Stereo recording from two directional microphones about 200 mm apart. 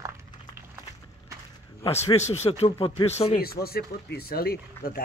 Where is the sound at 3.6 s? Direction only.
50° left (ahead or behind).